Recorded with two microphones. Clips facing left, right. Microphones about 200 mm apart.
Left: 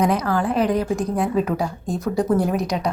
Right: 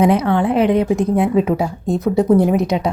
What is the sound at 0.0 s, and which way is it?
A woman's voice, 25° right (ahead or behind).